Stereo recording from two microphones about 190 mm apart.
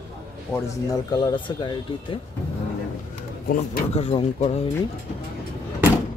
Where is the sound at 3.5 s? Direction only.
45° left (ahead or behind).